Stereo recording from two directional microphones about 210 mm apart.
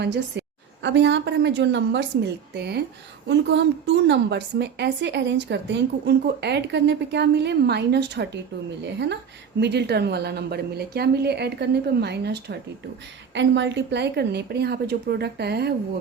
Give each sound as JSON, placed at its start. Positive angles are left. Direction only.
{"t": 0.0, "sound": "a woman's voice", "side_deg": -55}